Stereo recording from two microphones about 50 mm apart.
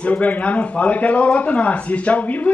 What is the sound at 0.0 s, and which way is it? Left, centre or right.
Speech, left.